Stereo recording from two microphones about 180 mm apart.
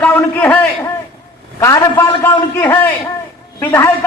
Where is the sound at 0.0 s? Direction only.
10° left (ahead or behind).